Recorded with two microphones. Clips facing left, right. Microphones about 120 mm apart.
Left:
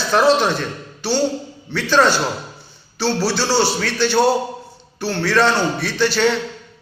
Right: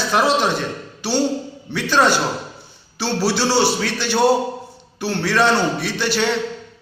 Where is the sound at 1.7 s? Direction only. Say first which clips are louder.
Left 1 dB; 10° right (ahead or behind).